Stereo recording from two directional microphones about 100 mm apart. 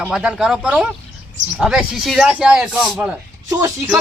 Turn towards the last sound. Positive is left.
turn(degrees=-35)  # may be behind; listen again after turning